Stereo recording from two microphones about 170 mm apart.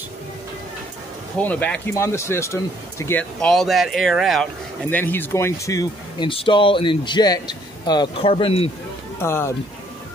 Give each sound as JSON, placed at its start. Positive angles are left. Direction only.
{"t": 1.4, "sound": "speech", "side_deg": 10}
{"t": 9.2, "sound": "speech", "side_deg": 15}